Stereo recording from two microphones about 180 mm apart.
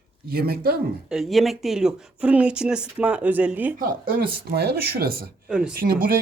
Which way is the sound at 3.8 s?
55° right (ahead or behind).